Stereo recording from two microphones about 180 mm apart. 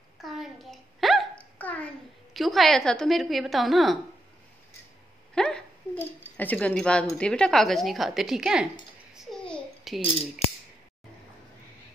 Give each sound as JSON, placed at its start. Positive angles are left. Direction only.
{"t": 0.2, "sound": "hiccup", "side_deg": 0}
{"t": 2.3, "sound": "speech", "side_deg": 0}
{"t": 5.3, "sound": "speech", "side_deg": 5}
{"t": 9.1, "sound": "babbling", "side_deg": 0}